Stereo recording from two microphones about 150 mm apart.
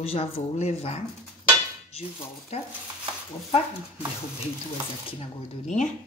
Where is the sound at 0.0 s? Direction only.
40° left (ahead or behind).